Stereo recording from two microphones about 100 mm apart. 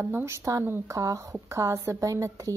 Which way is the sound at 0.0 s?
25° right (ahead or behind).